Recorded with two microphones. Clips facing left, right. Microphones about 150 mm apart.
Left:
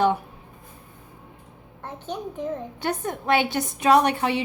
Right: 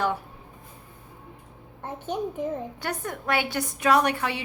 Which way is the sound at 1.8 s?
10° right (ahead or behind).